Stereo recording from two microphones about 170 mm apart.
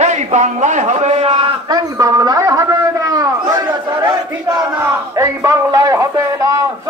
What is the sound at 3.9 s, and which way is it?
Battle cry, 15° right (ahead or behind).